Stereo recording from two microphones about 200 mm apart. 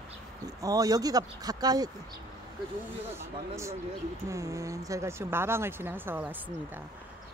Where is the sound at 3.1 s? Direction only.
15° right (ahead or behind).